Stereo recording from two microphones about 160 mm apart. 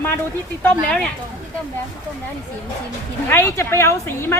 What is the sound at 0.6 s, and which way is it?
Speech, 5° left (ahead or behind).